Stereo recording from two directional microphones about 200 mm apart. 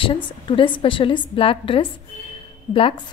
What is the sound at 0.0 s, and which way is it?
A woman's voice, 25° left (ahead or behind).